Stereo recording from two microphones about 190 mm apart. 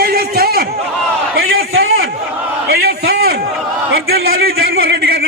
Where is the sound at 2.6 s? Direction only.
55° right (ahead or behind).